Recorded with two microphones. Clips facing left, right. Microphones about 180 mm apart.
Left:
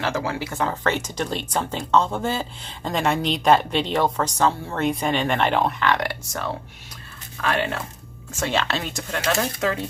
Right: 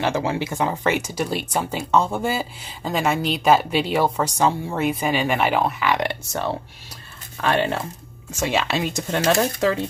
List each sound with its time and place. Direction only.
0.0 s speech: 25° right (ahead or behind); by 5.9 s 5° right (ahead or behind)
5.9 s speech: 25° right (ahead or behind)
8.3 s speech: 10° right (ahead or behind)
9.2 s speech: 35° right (ahead or behind)